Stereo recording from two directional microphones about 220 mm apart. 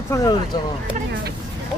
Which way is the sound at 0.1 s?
15° left (ahead or behind).